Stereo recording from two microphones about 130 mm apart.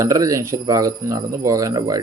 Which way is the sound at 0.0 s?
25° right (ahead or behind).